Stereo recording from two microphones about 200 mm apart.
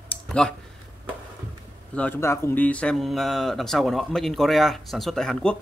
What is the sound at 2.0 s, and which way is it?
Speech, 10° left (ahead or behind).